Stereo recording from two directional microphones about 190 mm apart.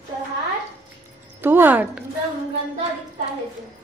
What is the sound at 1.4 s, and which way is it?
Speech, 10° right (ahead or behind).